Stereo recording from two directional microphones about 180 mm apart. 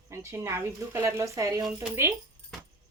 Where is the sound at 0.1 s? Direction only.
15° right (ahead or behind).